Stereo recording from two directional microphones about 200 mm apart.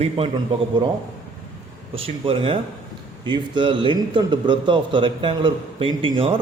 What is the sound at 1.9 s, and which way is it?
A man's voice, 25° right (ahead or behind).